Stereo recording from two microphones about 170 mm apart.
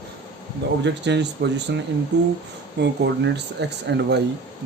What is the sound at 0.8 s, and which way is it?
Speech, 90° right.